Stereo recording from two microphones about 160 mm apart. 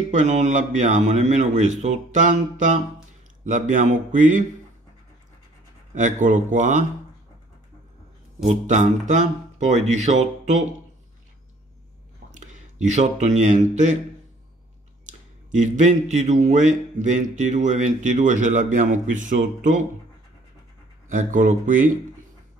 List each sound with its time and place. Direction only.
0.1 s speech: 50° right (ahead or behind)
5.9 s speech: 50° right (ahead or behind)
8.5 s speech: 50° right (ahead or behind)
12.3 s a man's voice: 50° right (ahead or behind)
15.0 s speech: 50° right (ahead or behind)
21.1 s speech: 55° right (ahead or behind)